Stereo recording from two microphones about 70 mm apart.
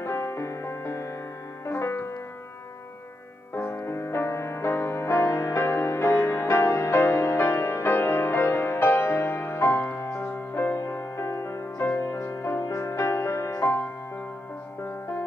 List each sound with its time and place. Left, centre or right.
0.0 s music: left
3.5 s music: left